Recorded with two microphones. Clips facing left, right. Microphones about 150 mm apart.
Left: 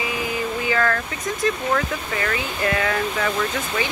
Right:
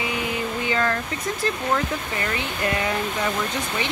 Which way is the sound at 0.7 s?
25° right (ahead or behind).